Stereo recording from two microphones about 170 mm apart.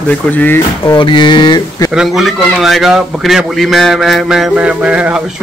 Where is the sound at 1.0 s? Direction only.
30° left (ahead or behind).